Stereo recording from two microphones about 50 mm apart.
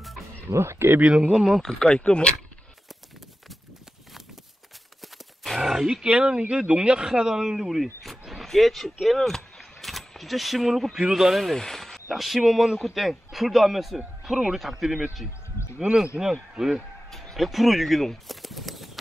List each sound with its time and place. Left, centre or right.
0.5 s speech: right
1.0 s speech: right
1.4 s a man's voice: centre
1.7 s speech: centre
5.0 s horse: centre
5.6 s a sound: centre
6.0 s speech: right; by 11.5 s centre
11.5 s a sound: centre
12.1 s a man's voice: centre
17.1 s speech: centre